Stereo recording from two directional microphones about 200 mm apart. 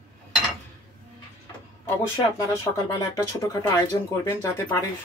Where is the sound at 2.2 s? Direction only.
15° left (ahead or behind).